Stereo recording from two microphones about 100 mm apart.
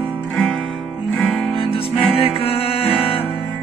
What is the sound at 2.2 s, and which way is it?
Music, 80° left.